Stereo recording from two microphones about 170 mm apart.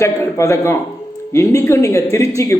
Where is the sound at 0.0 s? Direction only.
15° left (ahead or behind).